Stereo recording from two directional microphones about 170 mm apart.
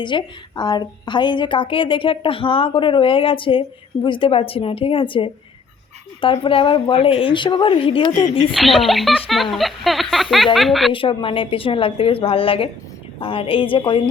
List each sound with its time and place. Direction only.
0.0 s a woman's voice: 30° left (ahead or behind)
8.5 s speech: centre (ahead or behind)
10.9 s speech: 30° left (ahead or behind)